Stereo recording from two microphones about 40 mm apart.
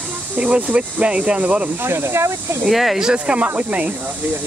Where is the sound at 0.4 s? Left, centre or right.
Right.